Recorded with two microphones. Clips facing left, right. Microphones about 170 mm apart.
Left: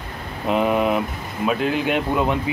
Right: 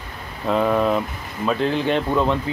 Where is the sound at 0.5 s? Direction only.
15° left (ahead or behind).